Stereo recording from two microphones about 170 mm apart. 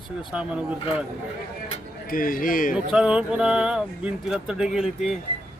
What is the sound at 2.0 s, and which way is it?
Speech, 55° left (ahead or behind).